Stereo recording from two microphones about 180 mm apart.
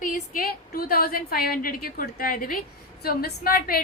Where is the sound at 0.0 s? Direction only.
50° left (ahead or behind).